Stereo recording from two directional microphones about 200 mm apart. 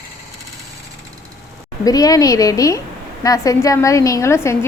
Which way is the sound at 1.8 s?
20° left (ahead or behind).